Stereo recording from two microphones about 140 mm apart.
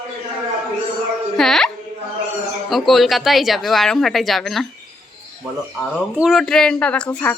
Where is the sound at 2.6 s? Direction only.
Centre (ahead or behind).